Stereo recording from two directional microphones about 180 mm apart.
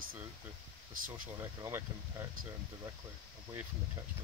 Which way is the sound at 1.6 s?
15° right (ahead or behind).